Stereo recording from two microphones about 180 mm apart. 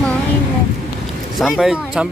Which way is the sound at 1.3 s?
Centre (ahead or behind).